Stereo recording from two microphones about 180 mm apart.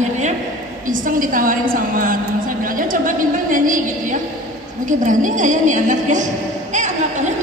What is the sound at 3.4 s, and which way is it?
Speech, 45° right (ahead or behind).